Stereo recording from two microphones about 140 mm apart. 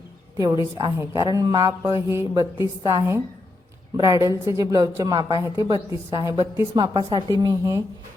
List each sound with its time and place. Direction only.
0.3 s a woman's voice: 25° right (ahead or behind)